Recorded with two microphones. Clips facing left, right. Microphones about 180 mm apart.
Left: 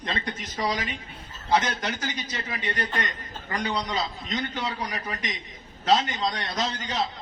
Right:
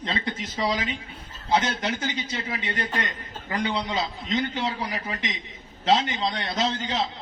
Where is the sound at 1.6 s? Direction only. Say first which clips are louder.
Right 2 dB; 25° right (ahead or behind).